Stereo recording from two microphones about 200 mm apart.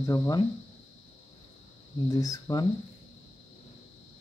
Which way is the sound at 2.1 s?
15° left (ahead or behind).